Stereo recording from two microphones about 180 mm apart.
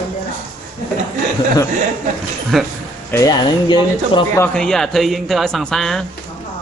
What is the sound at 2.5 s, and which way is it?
Speech, centre (ahead or behind).